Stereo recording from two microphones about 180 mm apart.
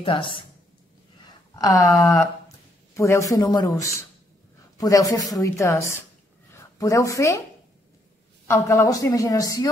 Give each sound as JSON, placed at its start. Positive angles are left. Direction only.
{"t": 0.0, "sound": "a woman's voice", "side_deg": 30}
{"t": 1.5, "sound": "a woman's voice", "side_deg": 20}
{"t": 4.7, "sound": "a woman's voice", "side_deg": 20}
{"t": 8.5, "sound": "a woman's voice", "side_deg": 15}